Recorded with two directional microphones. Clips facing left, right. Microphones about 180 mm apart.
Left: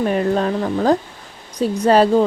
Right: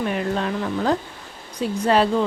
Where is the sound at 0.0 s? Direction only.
40° left (ahead or behind).